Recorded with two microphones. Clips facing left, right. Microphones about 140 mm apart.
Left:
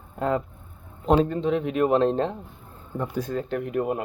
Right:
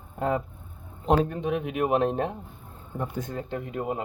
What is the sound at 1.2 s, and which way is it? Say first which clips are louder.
Speech: left 4 dB; 15° right (ahead or behind).